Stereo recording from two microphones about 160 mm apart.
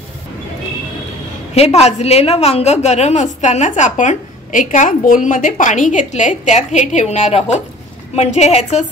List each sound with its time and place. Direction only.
1.5 s a woman's voice: 40° left (ahead or behind)